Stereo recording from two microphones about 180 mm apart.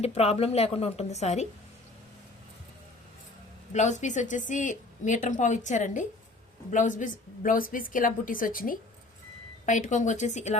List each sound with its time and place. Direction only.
0.0 s a woman's voice: 35° left (ahead or behind)
3.7 s a woman's voice: 40° left (ahead or behind)